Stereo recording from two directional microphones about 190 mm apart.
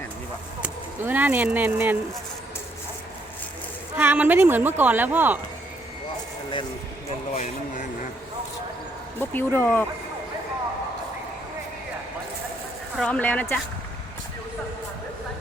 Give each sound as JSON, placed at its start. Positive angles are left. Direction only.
{"t": 0.6, "sound": "speech", "side_deg": -10}
{"t": 3.9, "sound": "speech", "side_deg": -10}
{"t": 7.3, "sound": "speech", "side_deg": 40}
{"t": 9.1, "sound": "speech", "side_deg": 10}
{"t": 13.0, "sound": "speech", "side_deg": 5}